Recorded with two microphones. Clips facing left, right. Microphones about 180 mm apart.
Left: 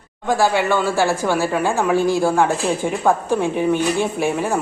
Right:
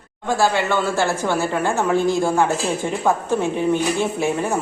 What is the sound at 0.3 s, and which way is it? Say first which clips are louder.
Speech: left 2 dB; 15° left (ahead or behind).